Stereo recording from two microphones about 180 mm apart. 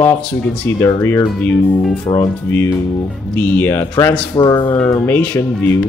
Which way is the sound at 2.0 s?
15° left (ahead or behind).